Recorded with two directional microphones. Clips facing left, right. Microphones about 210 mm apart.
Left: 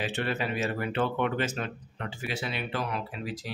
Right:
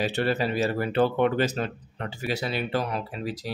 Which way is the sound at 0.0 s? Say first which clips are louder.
Right 5 dB; 35° right (ahead or behind).